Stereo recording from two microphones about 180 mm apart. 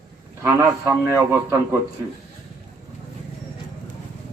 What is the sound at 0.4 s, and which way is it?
A man's voice, 15° right (ahead or behind).